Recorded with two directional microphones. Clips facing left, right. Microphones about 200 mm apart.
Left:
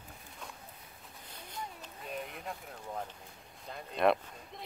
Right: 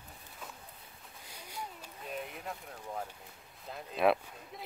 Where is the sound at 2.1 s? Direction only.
Centre (ahead or behind).